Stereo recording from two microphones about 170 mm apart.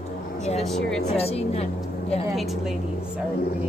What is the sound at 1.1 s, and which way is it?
A woman's voice, 35° left (ahead or behind).